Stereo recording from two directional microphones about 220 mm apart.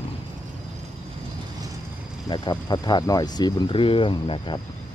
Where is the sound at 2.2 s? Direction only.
20° left (ahead or behind).